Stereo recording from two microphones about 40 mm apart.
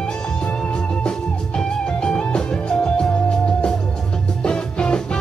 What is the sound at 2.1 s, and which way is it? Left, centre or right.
Music, left.